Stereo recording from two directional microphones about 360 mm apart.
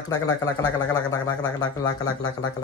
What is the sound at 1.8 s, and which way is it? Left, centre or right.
Speech, left.